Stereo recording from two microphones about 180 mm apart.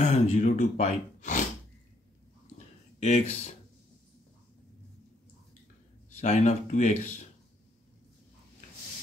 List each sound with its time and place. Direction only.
0.0 s speech: 40° left (ahead or behind)
2.5 s a sound: 40° left (ahead or behind)
6.0 s speech: 40° left (ahead or behind)